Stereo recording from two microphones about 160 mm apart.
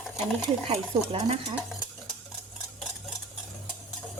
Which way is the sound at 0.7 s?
35° right (ahead or behind).